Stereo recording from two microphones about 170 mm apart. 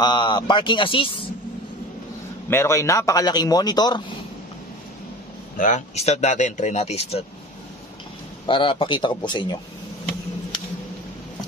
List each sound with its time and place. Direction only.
0.0 s a man's voice: 25° left (ahead or behind)
2.5 s a man's voice: 15° left (ahead or behind)
5.6 s speech: 45° left (ahead or behind)
8.5 s a man's voice: 30° left (ahead or behind)